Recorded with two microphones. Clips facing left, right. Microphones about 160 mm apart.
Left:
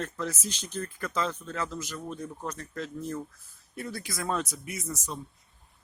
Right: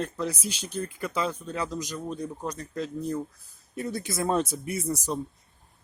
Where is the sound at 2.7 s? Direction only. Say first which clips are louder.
Right 4 dB; 35° right (ahead or behind).